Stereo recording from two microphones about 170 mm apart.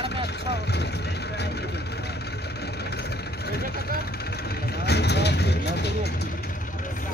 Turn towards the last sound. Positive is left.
turn(degrees=80)